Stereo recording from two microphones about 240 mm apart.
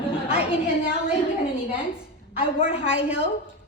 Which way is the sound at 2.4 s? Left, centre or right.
Left.